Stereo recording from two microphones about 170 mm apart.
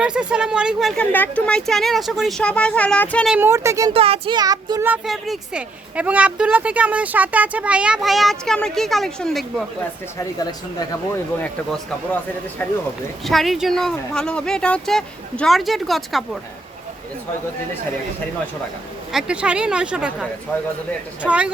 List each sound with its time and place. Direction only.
0.0 s speech: 5° right (ahead or behind)
1.1 s speech: 10° left (ahead or behind)
3.2 s speech: 10° right (ahead or behind)
3.9 s child singing: 35° right (ahead or behind)
4.9 s speech: centre (ahead or behind)
10.2 s speech: 25° left (ahead or behind)
13.2 s speech: centre (ahead or behind)
19.1 s speech: 5° right (ahead or behind)
20.5 s speech: 10° left (ahead or behind)
21.2 s speech: 5° right (ahead or behind)